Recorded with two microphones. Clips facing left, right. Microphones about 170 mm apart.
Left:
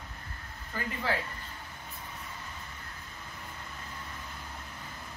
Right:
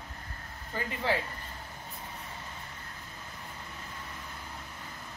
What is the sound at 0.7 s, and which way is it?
Speech, 20° right (ahead or behind).